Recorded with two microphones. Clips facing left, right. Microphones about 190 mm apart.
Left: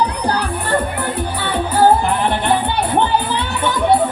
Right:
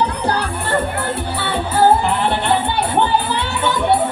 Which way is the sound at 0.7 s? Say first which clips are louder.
Even; 15° left (ahead or behind).